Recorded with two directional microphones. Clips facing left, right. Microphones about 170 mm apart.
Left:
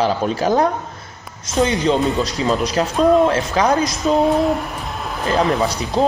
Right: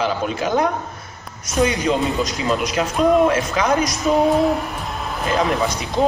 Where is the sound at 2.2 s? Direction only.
35° left (ahead or behind).